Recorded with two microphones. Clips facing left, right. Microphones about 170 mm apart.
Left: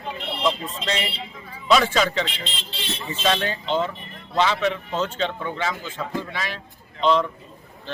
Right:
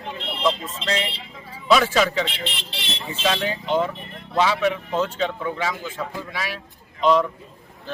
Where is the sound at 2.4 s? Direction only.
70° right (ahead or behind).